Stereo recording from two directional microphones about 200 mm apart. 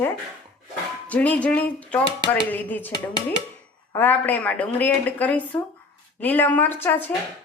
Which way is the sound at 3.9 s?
10° left (ahead or behind).